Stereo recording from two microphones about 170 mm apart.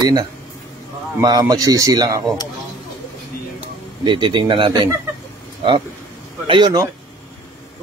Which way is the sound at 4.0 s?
25° right (ahead or behind).